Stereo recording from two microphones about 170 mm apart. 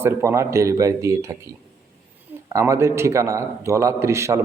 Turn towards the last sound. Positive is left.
turn(degrees=-15)  # may be behind; listen again after turning